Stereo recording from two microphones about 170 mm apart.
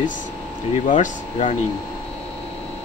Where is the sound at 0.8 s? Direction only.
45° left (ahead or behind).